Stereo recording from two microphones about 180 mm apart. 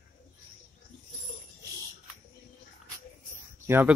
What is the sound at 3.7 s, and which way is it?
Speech, 10° right (ahead or behind).